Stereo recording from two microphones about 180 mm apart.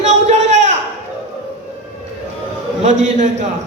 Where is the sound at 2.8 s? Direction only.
40° right (ahead or behind).